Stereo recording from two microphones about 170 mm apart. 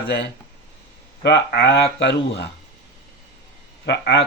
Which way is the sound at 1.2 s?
75° left (ahead or behind).